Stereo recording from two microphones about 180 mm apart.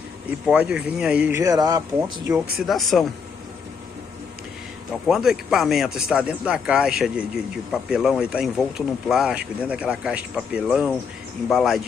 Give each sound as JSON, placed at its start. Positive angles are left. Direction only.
{"t": 0.5, "sound": "speech", "side_deg": -5}
{"t": 1.4, "sound": "speech", "side_deg": -20}
{"t": 2.6, "sound": "speech", "side_deg": 0}
{"t": 5.0, "sound": "speech", "side_deg": 0}